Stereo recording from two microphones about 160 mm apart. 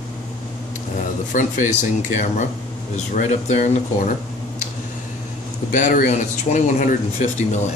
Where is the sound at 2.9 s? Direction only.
50° left (ahead or behind).